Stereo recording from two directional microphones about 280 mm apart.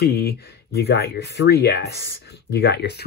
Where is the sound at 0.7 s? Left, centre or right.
Left.